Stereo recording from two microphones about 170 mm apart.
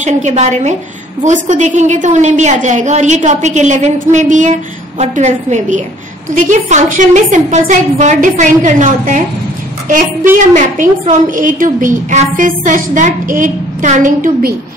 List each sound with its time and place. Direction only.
0.0 s a woman's voice: 45° right (ahead or behind)
10.5 s a woman's voice: 50° right (ahead or behind)